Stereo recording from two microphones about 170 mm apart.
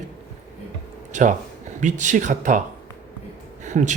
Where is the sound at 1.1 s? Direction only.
50° right (ahead or behind).